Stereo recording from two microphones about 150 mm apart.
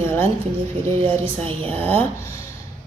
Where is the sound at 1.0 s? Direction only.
40° right (ahead or behind).